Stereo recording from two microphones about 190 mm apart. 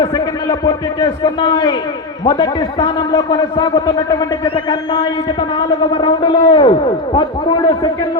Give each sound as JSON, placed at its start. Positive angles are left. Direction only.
{"t": 0.0, "sound": "a man's voice", "side_deg": 20}